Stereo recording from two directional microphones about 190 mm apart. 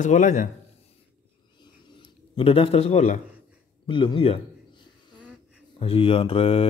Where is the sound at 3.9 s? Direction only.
25° left (ahead or behind).